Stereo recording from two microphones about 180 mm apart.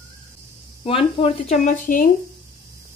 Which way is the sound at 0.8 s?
30° left (ahead or behind).